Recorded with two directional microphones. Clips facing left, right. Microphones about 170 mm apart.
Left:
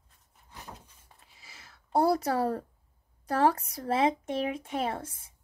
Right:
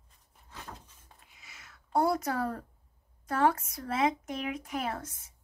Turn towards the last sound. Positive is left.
turn(degrees=30)  # may be behind; listen again after turning